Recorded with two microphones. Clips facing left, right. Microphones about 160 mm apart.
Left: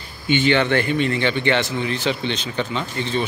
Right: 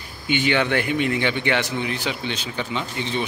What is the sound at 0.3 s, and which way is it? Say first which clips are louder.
Speech: left 3 dB; 10° right (ahead or behind).